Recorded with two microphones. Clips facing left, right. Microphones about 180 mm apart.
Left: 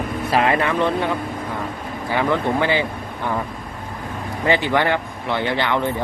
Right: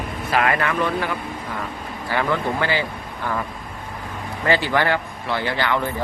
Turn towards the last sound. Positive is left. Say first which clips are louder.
# left 2 dB
turn(degrees=20)  # may be behind; listen again after turning